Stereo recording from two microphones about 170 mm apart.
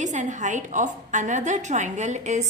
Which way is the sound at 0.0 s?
45° right (ahead or behind).